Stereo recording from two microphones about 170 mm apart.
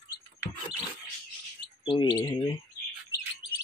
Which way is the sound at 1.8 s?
25° left (ahead or behind).